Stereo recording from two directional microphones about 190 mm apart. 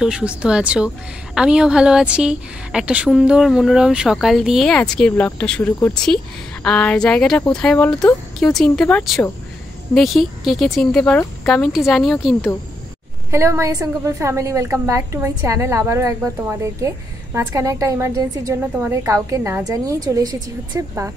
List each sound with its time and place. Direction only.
0.0 s a woman's voice: 5° right (ahead or behind)
13.3 s a woman's voice: 15° right (ahead or behind)